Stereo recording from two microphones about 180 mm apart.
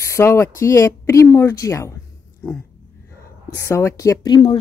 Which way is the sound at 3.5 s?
15° left (ahead or behind).